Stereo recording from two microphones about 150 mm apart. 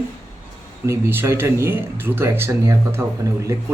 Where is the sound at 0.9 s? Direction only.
15° right (ahead or behind).